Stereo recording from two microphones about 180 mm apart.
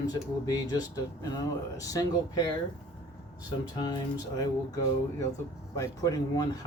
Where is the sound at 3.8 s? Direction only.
20° left (ahead or behind).